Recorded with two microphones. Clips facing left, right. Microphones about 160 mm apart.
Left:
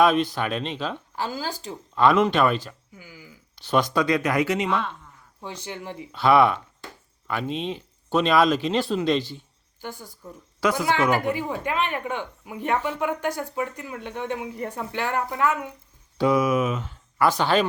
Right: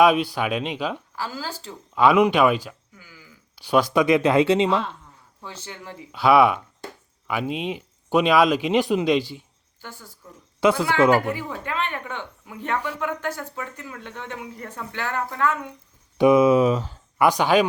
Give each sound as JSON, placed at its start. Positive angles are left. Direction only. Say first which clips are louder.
{"t": 0.0, "sound": "speech", "louder": "right 2 dB", "side_deg": -10}
{"t": 1.1, "sound": "a woman's voice", "louder": "left 2 dB", "side_deg": 20}
{"t": 2.0, "sound": "speech", "louder": "right 2 dB", "side_deg": -10}
{"t": 2.9, "sound": "a sound", "louder": "left 4 dB", "side_deg": 15}
{"t": 3.5, "sound": "speech", "louder": "right 3 dB", "side_deg": -10}
{"t": 4.0, "sound": "speech", "louder": "right 5 dB", "side_deg": -25}
{"t": 5.4, "sound": "a woman's voice", "louder": "left 4 dB", "side_deg": 15}
{"t": 6.1, "sound": "speech", "louder": "right 2 dB", "side_deg": -10}
{"t": 9.8, "sound": "a woman's voice", "louder": "left 5 dB", "side_deg": 15}
{"t": 10.6, "sound": "speech", "louder": "right 4 dB", "side_deg": -25}
{"t": 11.3, "sound": "a woman's voice", "louder": "left 3 dB", "side_deg": 15}
{"t": 16.1, "sound": "speech", "louder": "right 5 dB", "side_deg": -20}
{"t": 17.2, "sound": "speech", "louder": "right 3 dB", "side_deg": -15}